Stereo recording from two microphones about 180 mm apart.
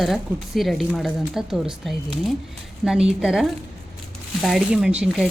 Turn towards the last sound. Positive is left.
turn(degrees=-5)  # may be behind; listen again after turning